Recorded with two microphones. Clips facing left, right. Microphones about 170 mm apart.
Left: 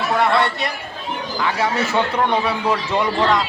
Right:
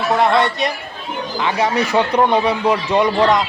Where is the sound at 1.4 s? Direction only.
20° right (ahead or behind).